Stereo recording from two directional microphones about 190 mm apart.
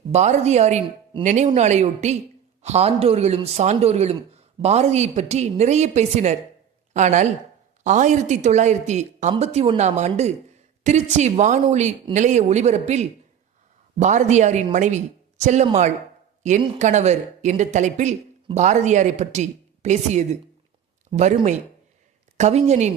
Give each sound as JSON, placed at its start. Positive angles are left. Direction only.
{"t": 0.1, "sound": "speech", "side_deg": -35}